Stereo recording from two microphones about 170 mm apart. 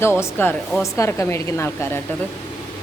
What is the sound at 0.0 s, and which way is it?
Speech, 15° left (ahead or behind).